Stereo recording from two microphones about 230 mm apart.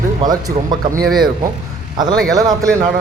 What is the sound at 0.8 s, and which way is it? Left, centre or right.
Speech, right.